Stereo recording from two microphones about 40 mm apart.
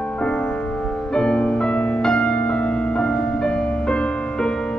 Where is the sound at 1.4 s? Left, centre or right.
Left.